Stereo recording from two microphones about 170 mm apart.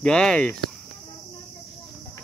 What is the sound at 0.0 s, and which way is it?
Speech, 5° left (ahead or behind).